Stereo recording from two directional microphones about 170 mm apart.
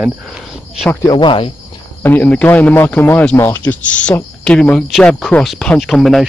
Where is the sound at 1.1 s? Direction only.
30° left (ahead or behind).